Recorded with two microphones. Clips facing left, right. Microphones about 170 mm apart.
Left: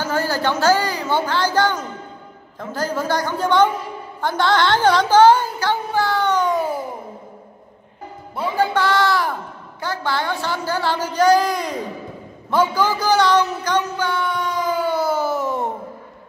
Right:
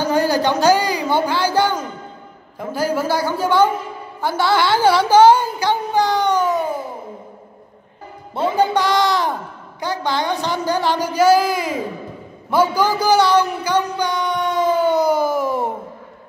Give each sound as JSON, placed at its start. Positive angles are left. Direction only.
{"t": 0.0, "sound": "a woman's voice", "side_deg": -15}
{"t": 4.2, "sound": "music", "side_deg": -10}
{"t": 8.5, "sound": "a child's voice", "side_deg": -15}
{"t": 12.4, "sound": "a sound", "side_deg": -10}